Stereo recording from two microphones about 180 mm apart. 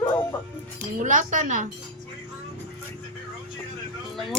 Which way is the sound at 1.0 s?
45° right (ahead or behind).